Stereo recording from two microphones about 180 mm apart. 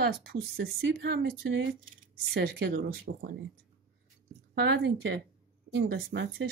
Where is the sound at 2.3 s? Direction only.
65° right (ahead or behind).